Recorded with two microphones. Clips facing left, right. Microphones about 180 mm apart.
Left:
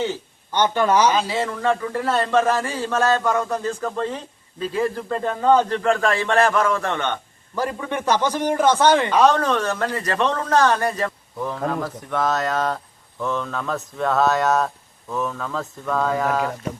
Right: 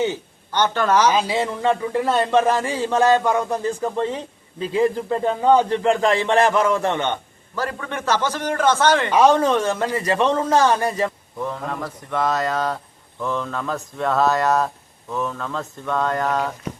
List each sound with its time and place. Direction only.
0.5 s a man's voice: 10° left (ahead or behind)
1.1 s speech: 15° right (ahead or behind)
7.5 s a man's voice: 15° left (ahead or behind)
9.0 s speech: 10° right (ahead or behind)
11.3 s speech: centre (ahead or behind)